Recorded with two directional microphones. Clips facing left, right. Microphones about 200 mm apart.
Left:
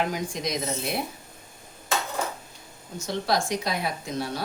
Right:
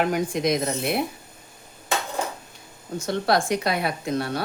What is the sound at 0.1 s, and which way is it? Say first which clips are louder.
Speech: right 7 dB; 60° right (ahead or behind).